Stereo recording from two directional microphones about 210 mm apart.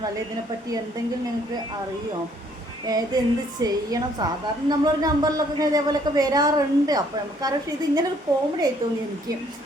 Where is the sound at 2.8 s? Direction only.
20° right (ahead or behind).